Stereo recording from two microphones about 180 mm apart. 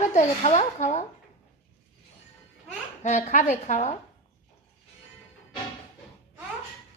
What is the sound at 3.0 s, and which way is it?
Speech, 40° left (ahead or behind).